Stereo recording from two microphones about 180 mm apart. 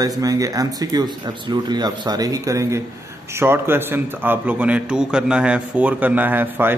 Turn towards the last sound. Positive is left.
turn(degrees=-10)  # may be behind; listen again after turning